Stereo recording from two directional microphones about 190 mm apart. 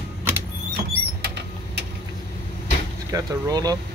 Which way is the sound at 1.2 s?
60° right (ahead or behind).